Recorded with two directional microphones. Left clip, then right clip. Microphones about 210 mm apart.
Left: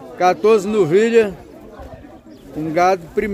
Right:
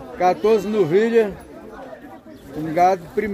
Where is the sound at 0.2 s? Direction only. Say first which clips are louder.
Left 3 dB; 15° left (ahead or behind).